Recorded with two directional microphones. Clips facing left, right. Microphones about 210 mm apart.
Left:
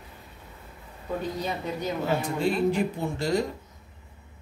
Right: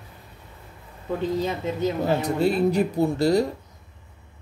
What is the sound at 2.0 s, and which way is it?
Speech, 40° right (ahead or behind).